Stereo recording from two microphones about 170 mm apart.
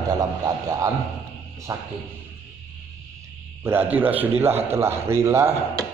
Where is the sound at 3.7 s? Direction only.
10° right (ahead or behind).